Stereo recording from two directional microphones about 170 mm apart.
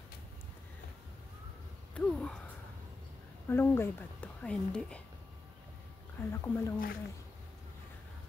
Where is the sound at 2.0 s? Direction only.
5° left (ahead or behind).